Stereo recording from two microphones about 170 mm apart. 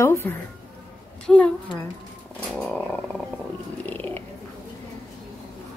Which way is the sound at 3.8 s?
10° left (ahead or behind).